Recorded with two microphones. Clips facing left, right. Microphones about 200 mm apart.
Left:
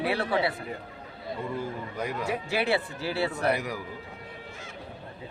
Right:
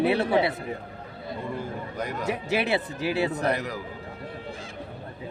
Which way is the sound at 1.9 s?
10° left (ahead or behind).